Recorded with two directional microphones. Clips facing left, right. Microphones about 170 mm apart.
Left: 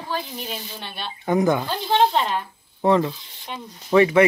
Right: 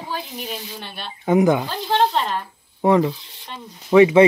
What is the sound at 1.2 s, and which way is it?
Speech, 15° right (ahead or behind).